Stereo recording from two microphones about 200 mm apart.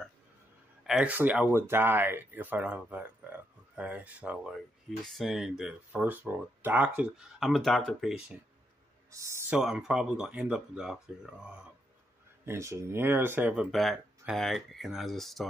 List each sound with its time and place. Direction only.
0.8 s speech: 5° right (ahead or behind)
9.1 s speech: 15° right (ahead or behind)
12.4 s speech: 15° right (ahead or behind); by 15.4 s centre (ahead or behind)